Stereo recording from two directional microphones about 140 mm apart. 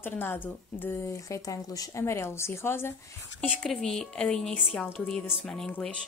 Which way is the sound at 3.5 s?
5° left (ahead or behind).